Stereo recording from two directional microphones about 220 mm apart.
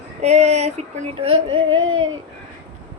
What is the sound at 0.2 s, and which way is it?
Speech, 30° right (ahead or behind).